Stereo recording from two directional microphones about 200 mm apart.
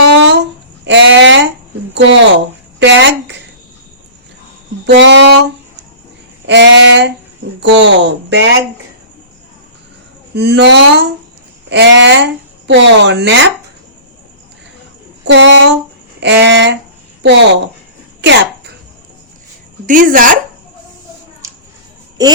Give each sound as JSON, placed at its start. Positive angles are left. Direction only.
{"t": 0.0, "sound": "a sound", "side_deg": -65}
{"t": 1.9, "sound": "speech", "side_deg": -65}
{"t": 4.9, "sound": "speech", "side_deg": -65}
{"t": 6.5, "sound": "speech", "side_deg": -65}
{"t": 10.3, "sound": "speech", "side_deg": -55}
{"t": 15.2, "sound": "speech", "side_deg": -65}
{"t": 18.2, "sound": "throat clearing", "side_deg": -55}
{"t": 19.9, "sound": "speech", "side_deg": -40}